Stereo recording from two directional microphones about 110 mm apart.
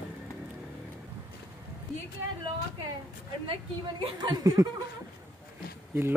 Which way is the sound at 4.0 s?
45° right (ahead or behind).